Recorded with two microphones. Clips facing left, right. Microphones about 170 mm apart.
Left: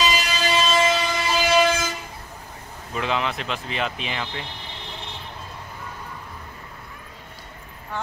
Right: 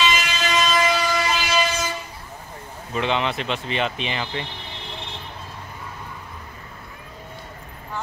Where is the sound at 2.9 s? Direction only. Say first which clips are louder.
Right 2 dB; centre (ahead or behind).